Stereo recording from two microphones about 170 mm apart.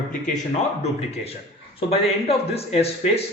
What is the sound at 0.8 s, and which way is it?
A man's voice, 35° left (ahead or behind).